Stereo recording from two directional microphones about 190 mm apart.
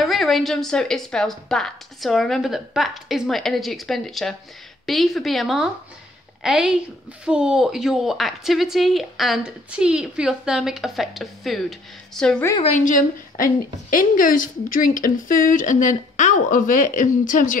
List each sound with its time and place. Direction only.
0.0 s a woman's voice: centre (ahead or behind)
12.6 s a woman's voice: 40° left (ahead or behind)